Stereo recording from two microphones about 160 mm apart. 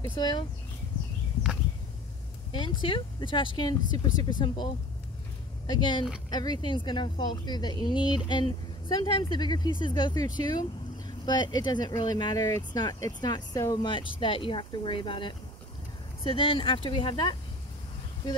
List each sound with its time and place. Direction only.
0.1 s speech: 30° left (ahead or behind)
2.5 s speech: 30° left (ahead or behind)
5.7 s speech: 30° left (ahead or behind)